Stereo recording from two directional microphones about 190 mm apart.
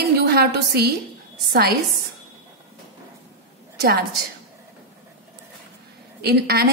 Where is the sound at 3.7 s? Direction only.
55° right (ahead or behind).